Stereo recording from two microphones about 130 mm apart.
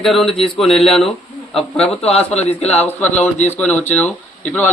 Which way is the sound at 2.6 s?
55° left (ahead or behind).